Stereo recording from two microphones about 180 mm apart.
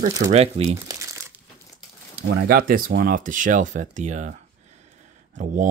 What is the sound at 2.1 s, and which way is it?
Speech, 60° right (ahead or behind).